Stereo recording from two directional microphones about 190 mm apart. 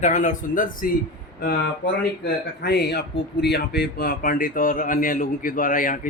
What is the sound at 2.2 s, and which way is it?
Speech, 60° left (ahead or behind).